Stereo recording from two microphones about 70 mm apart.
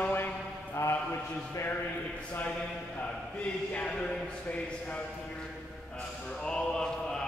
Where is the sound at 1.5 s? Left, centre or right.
Left.